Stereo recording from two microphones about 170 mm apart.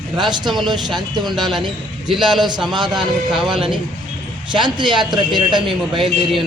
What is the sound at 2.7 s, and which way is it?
Speech, 25° right (ahead or behind).